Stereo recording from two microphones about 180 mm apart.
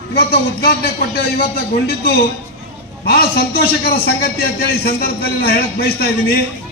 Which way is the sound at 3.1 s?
60° left (ahead or behind).